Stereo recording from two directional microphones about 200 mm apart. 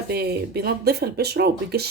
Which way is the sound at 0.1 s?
50° right (ahead or behind).